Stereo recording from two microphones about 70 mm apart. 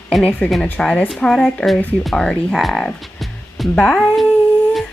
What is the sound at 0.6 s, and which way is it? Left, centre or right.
A woman's voice, centre.